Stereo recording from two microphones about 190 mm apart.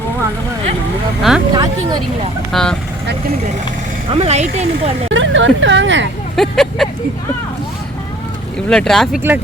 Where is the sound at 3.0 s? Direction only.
60° right (ahead or behind).